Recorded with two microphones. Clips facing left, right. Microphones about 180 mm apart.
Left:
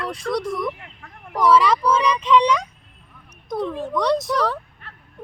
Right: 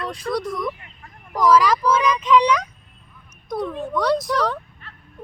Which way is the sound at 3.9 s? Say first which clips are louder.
Even; centre (ahead or behind).